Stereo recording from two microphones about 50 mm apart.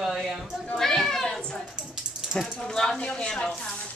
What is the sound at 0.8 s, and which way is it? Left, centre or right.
A child's voice, centre.